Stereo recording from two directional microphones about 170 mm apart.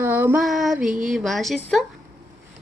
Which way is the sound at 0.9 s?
50° right (ahead or behind).